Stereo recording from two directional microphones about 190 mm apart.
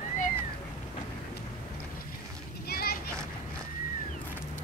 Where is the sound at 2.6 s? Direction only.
55° left (ahead or behind).